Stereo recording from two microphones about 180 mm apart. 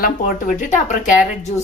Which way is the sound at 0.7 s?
45° left (ahead or behind).